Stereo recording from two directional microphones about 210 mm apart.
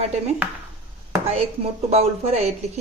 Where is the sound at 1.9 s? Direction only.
30° right (ahead or behind).